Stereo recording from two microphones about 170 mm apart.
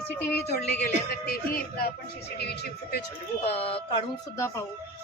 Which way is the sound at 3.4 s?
35° left (ahead or behind).